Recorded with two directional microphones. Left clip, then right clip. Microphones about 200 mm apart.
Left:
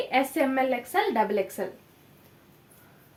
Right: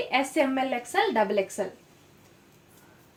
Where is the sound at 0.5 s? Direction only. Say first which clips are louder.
Left 1 dB; 15° left (ahead or behind).